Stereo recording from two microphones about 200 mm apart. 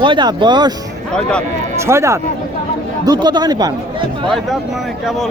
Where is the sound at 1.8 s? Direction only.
15° right (ahead or behind).